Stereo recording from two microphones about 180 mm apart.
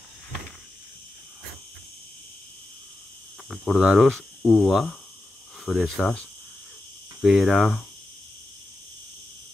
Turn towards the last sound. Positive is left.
turn(degrees=0)  # may be behind; listen again after turning